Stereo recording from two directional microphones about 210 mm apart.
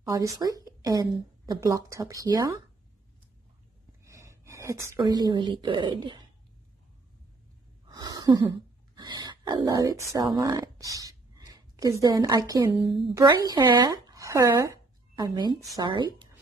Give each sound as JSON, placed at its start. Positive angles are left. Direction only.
{"t": 0.1, "sound": "a woman's voice", "side_deg": -15}
{"t": 4.0, "sound": "a woman's voice", "side_deg": -15}
{"t": 7.9, "sound": "a sound", "side_deg": -20}
{"t": 8.9, "sound": "speech", "side_deg": -20}